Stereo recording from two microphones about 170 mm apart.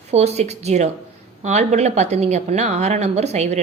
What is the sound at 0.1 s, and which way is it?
Speech, 40° right (ahead or behind).